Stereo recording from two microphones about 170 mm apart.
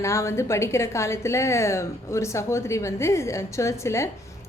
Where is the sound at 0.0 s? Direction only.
15° left (ahead or behind).